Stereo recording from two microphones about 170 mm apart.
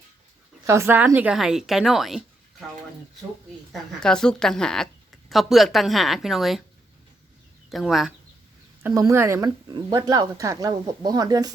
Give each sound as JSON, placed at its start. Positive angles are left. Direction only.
{"t": 0.6, "sound": "a woman's voice", "side_deg": -15}
{"t": 3.7, "sound": "a woman's voice", "side_deg": 5}
{"t": 7.7, "sound": "a woman's voice", "side_deg": 0}
{"t": 8.8, "sound": "a woman's voice", "side_deg": -15}